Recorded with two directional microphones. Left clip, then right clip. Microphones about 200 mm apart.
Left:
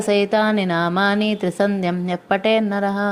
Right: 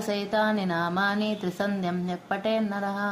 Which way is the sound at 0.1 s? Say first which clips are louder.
Left 9 dB; 35° left (ahead or behind).